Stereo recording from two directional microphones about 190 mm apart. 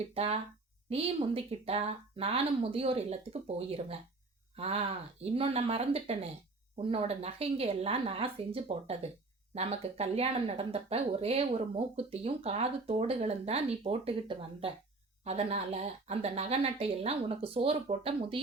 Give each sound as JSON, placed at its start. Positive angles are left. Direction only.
{"t": 0.1, "sound": "speech", "side_deg": -30}